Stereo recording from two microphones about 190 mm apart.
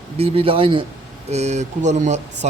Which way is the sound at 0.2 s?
30° right (ahead or behind).